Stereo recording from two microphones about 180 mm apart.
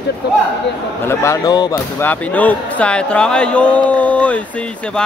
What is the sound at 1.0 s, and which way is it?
Speech, 15° left (ahead or behind).